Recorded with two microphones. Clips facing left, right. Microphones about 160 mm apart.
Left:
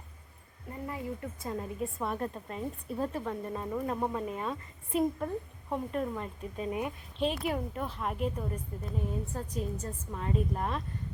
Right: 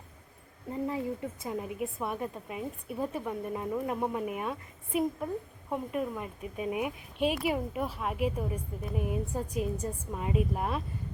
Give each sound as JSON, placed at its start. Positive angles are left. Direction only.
{"t": 0.7, "sound": "speech", "side_deg": -20}